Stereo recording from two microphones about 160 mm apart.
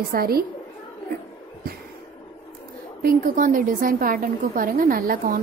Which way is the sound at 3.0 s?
60° right (ahead or behind).